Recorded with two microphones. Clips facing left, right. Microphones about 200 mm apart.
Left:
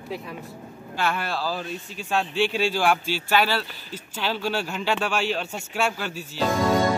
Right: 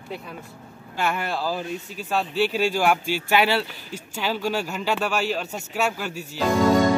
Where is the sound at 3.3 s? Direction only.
20° right (ahead or behind).